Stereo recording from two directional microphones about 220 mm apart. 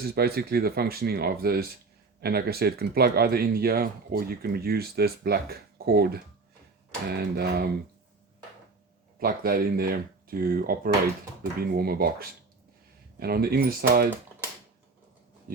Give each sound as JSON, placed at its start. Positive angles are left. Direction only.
{"t": 0.1, "sound": "speech", "side_deg": -45}
{"t": 9.2, "sound": "speech", "side_deg": -45}